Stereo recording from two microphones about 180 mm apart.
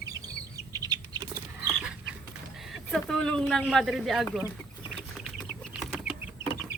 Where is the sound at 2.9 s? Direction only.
5° left (ahead or behind).